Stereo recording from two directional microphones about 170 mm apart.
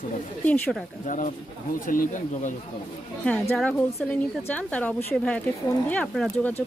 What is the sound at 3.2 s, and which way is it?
Speech, 10° left (ahead or behind).